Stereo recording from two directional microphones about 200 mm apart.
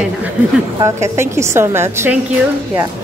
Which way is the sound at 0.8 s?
15° right (ahead or behind).